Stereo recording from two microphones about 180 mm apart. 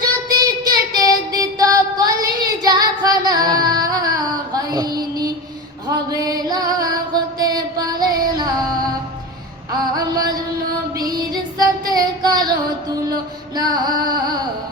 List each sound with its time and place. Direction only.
0.0 s child singing: 20° right (ahead or behind)
6.1 s music: 20° right (ahead or behind)
9.9 s music: 20° right (ahead or behind)
13.6 s music: 20° right (ahead or behind)